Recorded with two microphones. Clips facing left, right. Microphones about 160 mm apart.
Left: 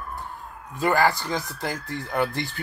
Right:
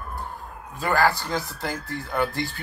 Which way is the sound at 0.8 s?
20° left (ahead or behind).